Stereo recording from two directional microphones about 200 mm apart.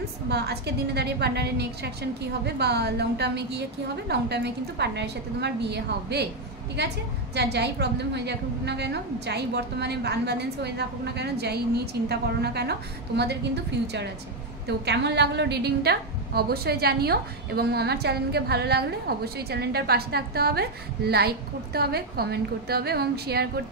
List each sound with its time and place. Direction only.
0.3 s a woman's voice: 55° right (ahead or behind)